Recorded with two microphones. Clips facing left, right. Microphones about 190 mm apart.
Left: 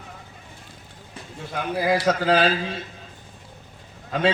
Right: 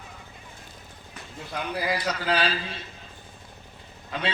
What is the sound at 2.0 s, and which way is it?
Speech, 45° left (ahead or behind).